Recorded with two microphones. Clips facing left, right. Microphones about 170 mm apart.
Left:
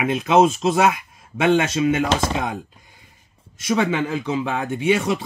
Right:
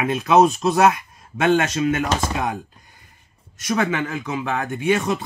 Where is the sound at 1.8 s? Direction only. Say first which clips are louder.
Left 2 dB; 25° left (ahead or behind).